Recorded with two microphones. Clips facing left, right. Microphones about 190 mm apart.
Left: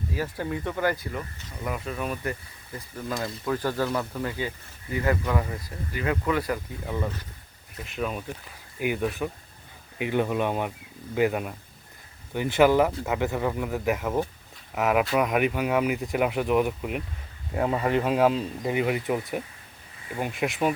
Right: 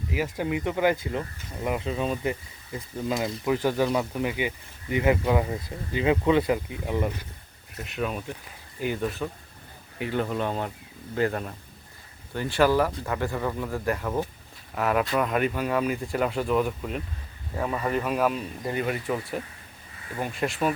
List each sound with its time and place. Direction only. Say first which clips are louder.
0.1 s speech: right 3 dB; 15° right (ahead or behind)
3.4 s speech: right 3 dB; 15° right (ahead or behind)
7.8 s speech: right 1 dB; centre (ahead or behind)
8.8 s speech: left 1 dB; 10° left (ahead or behind)